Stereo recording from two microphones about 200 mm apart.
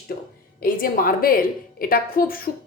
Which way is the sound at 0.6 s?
45° left (ahead or behind).